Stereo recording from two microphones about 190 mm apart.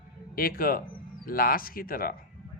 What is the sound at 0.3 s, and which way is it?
Speech, 50° left (ahead or behind).